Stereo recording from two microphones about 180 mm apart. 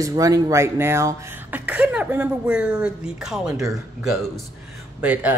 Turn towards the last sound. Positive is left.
turn(degrees=-10)  # may be behind; listen again after turning